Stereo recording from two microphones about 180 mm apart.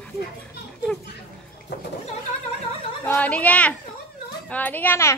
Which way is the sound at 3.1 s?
10° left (ahead or behind).